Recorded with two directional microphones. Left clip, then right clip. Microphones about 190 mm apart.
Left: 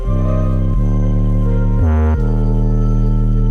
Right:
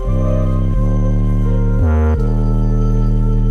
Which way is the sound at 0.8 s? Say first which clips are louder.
Right 1 dB; centre (ahead or behind).